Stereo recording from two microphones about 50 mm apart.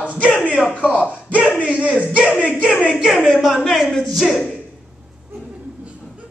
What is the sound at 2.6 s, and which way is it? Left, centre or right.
Speech, centre.